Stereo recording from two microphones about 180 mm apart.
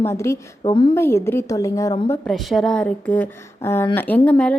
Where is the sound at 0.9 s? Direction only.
15° left (ahead or behind).